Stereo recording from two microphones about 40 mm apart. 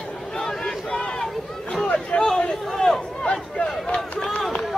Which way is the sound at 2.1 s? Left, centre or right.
Left.